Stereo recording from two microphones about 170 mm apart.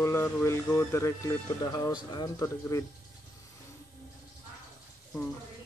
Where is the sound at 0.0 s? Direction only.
15° left (ahead or behind).